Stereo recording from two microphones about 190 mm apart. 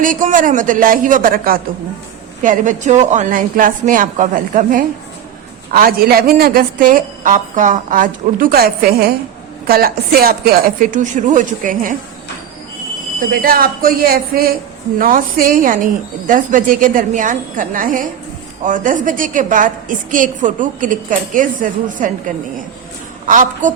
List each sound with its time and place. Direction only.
0.0 s a woman's voice: 45° right (ahead or behind)
13.3 s a woman's voice: 50° right (ahead or behind)
23.2 s a woman's voice: 40° right (ahead or behind)